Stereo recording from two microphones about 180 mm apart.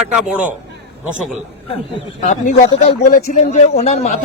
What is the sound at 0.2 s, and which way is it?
Speech, 10° right (ahead or behind).